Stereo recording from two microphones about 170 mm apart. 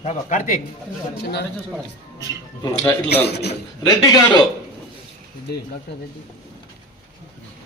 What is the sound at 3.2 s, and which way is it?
Speech, 75° left (ahead or behind).